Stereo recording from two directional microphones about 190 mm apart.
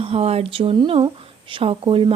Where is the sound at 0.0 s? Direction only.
30° right (ahead or behind).